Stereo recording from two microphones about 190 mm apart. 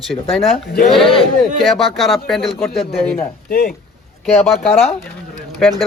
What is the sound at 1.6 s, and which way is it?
A man's voice, centre (ahead or behind).